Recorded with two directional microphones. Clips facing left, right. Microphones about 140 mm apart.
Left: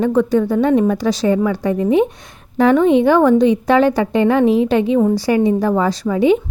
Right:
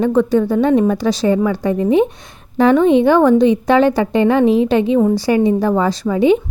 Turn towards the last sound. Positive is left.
turn(degrees=-25)  # may be behind; listen again after turning